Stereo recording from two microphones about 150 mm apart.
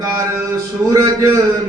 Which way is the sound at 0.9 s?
25° right (ahead or behind).